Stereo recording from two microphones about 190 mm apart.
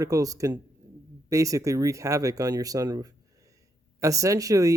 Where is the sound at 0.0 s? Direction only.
20° right (ahead or behind).